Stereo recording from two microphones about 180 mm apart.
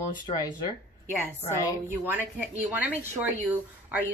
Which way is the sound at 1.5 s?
15° right (ahead or behind).